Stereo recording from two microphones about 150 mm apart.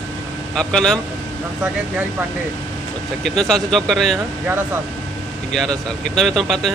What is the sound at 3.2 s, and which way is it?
Speech, 5° left (ahead or behind).